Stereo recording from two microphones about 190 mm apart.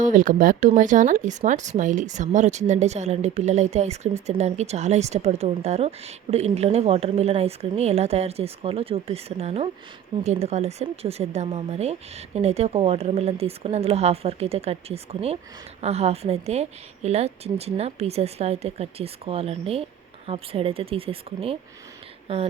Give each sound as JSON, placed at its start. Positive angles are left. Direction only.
{"t": 0.0, "sound": "speech", "side_deg": -40}